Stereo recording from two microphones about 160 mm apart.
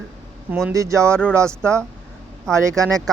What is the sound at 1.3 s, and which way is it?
Speech, 15° right (ahead or behind).